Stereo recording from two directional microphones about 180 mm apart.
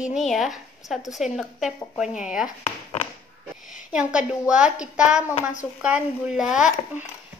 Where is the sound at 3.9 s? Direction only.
5° right (ahead or behind).